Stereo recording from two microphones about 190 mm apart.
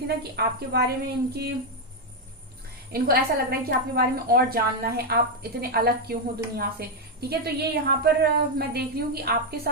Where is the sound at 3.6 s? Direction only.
55° right (ahead or behind).